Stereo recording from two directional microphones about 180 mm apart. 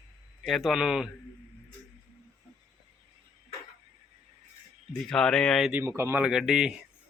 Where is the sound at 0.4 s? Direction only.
Centre (ahead or behind).